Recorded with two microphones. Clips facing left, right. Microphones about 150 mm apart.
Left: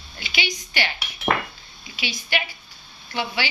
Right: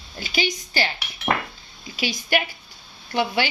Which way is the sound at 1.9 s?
45° right (ahead or behind).